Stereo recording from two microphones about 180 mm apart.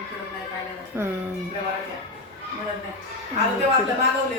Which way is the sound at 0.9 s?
10° right (ahead or behind).